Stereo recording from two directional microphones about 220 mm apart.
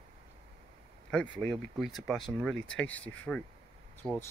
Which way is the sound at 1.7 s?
Centre (ahead or behind).